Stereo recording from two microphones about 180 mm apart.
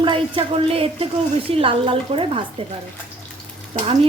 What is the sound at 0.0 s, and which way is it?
Speech, 30° right (ahead or behind).